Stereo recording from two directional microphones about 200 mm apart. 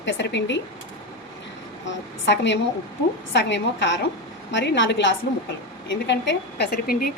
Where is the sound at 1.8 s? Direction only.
60° left (ahead or behind).